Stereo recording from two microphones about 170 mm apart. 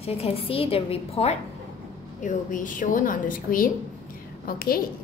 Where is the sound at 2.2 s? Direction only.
50° left (ahead or behind).